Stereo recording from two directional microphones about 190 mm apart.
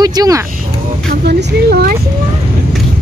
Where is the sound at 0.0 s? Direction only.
20° right (ahead or behind).